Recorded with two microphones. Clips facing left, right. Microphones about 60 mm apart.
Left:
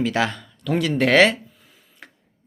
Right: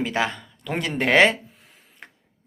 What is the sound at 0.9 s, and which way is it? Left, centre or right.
Speech, right.